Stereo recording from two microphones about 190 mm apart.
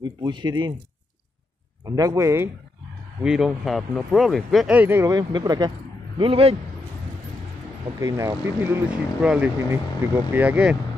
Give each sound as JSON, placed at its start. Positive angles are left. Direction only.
{"t": 0.0, "sound": "speech", "side_deg": -20}
{"t": 1.9, "sound": "speech", "side_deg": -20}
{"t": 3.2, "sound": "a man's voice", "side_deg": -5}
{"t": 8.0, "sound": "speech", "side_deg": -15}